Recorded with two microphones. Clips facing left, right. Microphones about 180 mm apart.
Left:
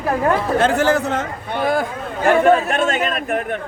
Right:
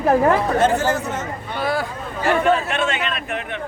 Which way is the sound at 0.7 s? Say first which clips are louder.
Left 4 dB; 60° left (ahead or behind).